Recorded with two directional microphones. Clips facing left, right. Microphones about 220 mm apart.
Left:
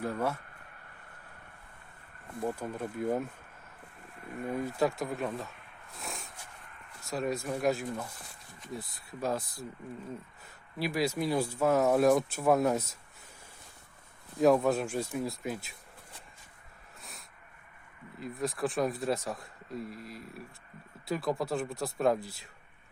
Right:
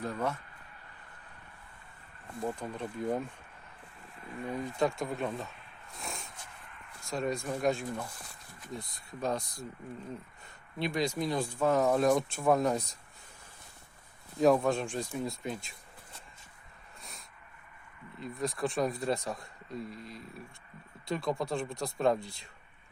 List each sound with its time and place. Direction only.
0.0 s speech: 10° left (ahead or behind)
2.4 s speech: 10° left (ahead or behind)
4.3 s speech: 50° left (ahead or behind)
4.6 s speech: 5° left (ahead or behind)
6.0 s a sound: centre (ahead or behind)
7.1 s speech: centre (ahead or behind)
10.8 s speech: 5° left (ahead or behind)
14.3 s speech: centre (ahead or behind)
17.0 s a sound: centre (ahead or behind)
18.2 s speech: centre (ahead or behind)